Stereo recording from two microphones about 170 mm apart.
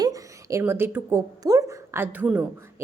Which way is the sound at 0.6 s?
10° right (ahead or behind).